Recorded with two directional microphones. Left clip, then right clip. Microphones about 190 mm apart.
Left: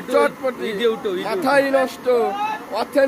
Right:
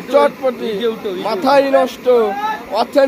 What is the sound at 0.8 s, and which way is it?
Speech, 30° left (ahead or behind).